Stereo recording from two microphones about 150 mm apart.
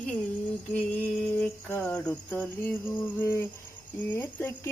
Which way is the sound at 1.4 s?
10° left (ahead or behind).